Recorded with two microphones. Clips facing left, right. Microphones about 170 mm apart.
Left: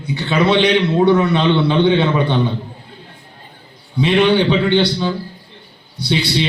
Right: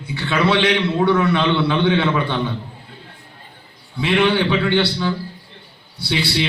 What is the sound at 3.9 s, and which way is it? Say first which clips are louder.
A man's voice: left 4 dB; 20° left (ahead or behind).